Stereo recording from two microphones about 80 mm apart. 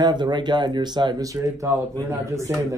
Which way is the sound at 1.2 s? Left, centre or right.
Right.